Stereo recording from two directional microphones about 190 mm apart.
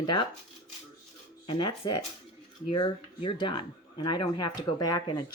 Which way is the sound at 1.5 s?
25° left (ahead or behind).